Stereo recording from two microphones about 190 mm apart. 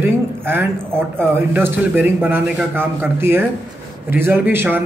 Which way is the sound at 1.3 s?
10° right (ahead or behind).